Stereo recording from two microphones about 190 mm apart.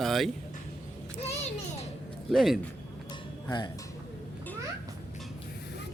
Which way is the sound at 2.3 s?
Centre (ahead or behind).